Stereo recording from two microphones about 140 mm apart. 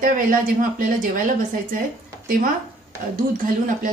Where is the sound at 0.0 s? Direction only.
75° right (ahead or behind).